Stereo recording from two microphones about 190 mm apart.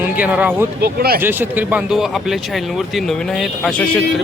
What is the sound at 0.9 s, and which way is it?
Speech, 55° right (ahead or behind).